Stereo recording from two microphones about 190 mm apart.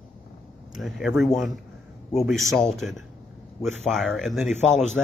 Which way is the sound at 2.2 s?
Centre (ahead or behind).